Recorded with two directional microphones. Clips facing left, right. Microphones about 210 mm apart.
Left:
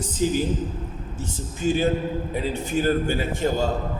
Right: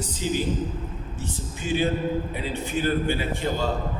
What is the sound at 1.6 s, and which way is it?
A man's voice, 40° left (ahead or behind).